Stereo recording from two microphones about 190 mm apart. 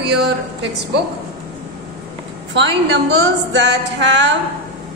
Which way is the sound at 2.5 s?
65° right (ahead or behind).